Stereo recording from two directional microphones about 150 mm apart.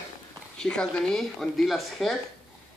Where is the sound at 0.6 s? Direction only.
5° left (ahead or behind).